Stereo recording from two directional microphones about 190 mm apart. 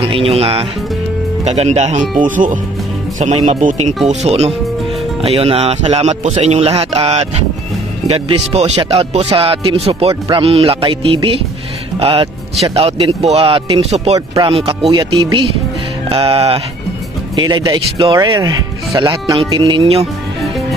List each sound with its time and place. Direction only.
0.0 s speech: 30° right (ahead or behind)
14.1 s speech: 25° right (ahead or behind)
16.1 s speech: 30° right (ahead or behind)